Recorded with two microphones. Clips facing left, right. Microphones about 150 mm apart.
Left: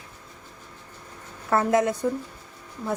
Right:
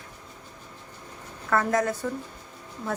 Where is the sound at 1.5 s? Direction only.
25° left (ahead or behind).